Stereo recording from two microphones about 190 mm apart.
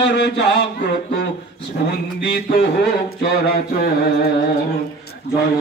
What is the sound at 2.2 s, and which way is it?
Speech, 55° left (ahead or behind).